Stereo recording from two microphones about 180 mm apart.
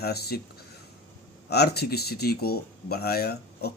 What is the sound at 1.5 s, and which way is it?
Speech, 60° left (ahead or behind).